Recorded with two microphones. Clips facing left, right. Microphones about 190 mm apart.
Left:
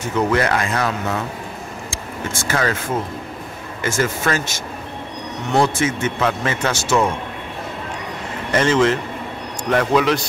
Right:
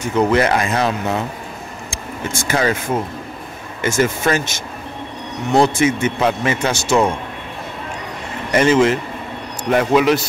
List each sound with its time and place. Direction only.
0.1 s speech: 20° right (ahead or behind)
2.4 s speech: 15° right (ahead or behind)
3.8 s speech: 20° right (ahead or behind)
8.5 s speech: 10° right (ahead or behind)